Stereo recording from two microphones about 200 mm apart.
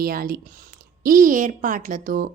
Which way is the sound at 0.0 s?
45° right (ahead or behind).